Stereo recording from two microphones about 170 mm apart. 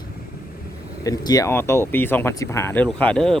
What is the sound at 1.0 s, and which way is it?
Speech, 20° left (ahead or behind).